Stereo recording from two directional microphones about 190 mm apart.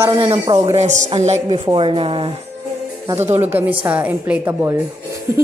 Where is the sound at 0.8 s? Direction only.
40° right (ahead or behind).